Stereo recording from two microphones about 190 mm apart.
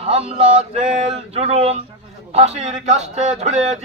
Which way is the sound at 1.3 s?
35° right (ahead or behind).